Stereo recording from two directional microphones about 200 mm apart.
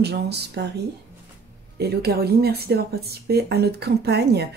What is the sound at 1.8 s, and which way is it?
Speech, 55° right (ahead or behind).